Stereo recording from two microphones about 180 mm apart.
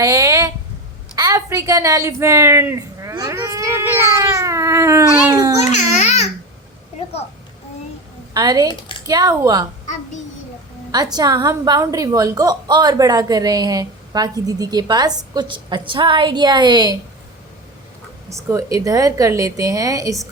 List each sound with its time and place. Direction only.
0.0 s a sound: 20° right (ahead or behind)
1.1 s a woman's voice: 20° right (ahead or behind)
5.7 s babbling: 40° left (ahead or behind)
8.3 s a woman's voice: 20° right (ahead or behind)
10.9 s a woman's voice: 20° right (ahead or behind)
18.4 s a woman's voice: 20° right (ahead or behind)